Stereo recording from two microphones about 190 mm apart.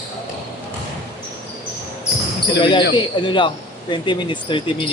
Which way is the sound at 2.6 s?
25° left (ahead or behind).